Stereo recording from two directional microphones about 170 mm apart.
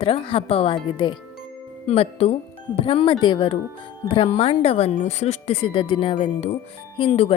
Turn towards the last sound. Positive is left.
turn(degrees=35)  # may be behind; listen again after turning